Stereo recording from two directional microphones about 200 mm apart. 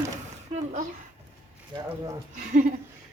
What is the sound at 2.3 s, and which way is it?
Speech, 40° right (ahead or behind).